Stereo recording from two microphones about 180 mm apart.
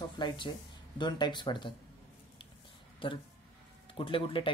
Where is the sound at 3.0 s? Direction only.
30° left (ahead or behind).